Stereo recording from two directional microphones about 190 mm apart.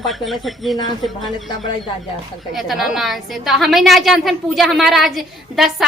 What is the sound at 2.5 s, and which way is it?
A woman's voice, centre (ahead or behind).